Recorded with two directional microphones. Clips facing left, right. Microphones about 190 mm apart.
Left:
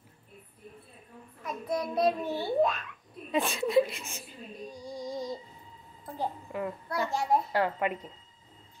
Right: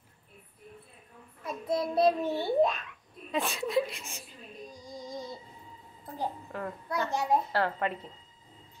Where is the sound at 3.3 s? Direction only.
Centre (ahead or behind).